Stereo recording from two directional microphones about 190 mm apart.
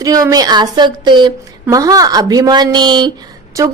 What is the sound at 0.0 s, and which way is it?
A woman's voice, 20° right (ahead or behind).